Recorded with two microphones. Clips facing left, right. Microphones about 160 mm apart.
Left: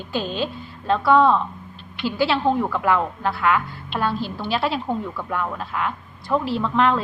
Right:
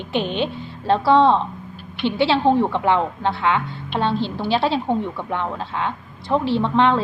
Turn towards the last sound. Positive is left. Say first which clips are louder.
# right 2 dB
turn(degrees=-25)  # may be behind; listen again after turning